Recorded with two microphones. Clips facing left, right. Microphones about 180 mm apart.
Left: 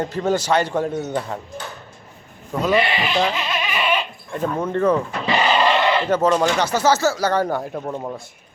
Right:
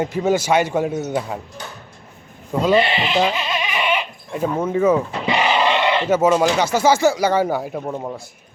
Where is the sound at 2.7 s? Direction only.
25° right (ahead or behind); by 8.2 s 5° right (ahead or behind).